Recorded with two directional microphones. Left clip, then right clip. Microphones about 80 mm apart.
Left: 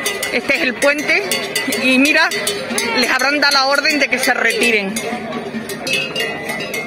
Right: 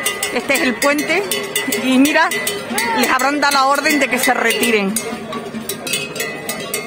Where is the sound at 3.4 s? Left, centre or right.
Right.